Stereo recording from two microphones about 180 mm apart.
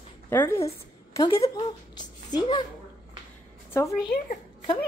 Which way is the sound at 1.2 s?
30° left (ahead or behind).